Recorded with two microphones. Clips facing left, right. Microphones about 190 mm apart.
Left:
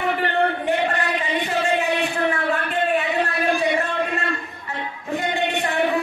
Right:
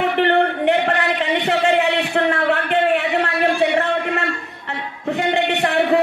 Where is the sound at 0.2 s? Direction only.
65° right (ahead or behind).